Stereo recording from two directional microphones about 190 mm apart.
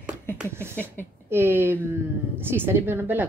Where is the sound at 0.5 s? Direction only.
10° right (ahead or behind).